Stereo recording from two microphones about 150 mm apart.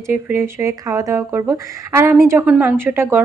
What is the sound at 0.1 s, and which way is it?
A woman's voice, 15° right (ahead or behind).